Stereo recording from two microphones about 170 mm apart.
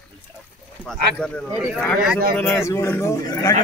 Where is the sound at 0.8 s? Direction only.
5° left (ahead or behind).